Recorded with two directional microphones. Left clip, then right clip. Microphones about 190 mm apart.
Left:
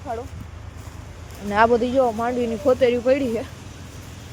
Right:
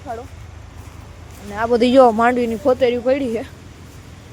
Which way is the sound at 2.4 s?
15° right (ahead or behind).